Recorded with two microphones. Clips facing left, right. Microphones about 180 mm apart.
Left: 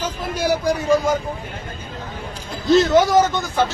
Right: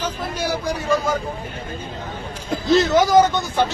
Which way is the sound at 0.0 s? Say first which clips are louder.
Left 2 dB; 10° left (ahead or behind).